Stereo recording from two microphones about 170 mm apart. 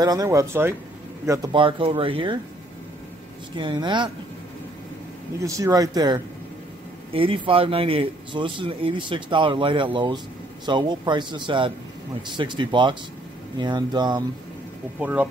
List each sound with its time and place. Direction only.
0.0 s a man's voice: 20° right (ahead or behind)
1.5 s speech: 30° right (ahead or behind)
3.5 s a man's voice: 25° right (ahead or behind)
5.4 s a man's voice: 20° right (ahead or behind)
15.0 s speech: 10° right (ahead or behind)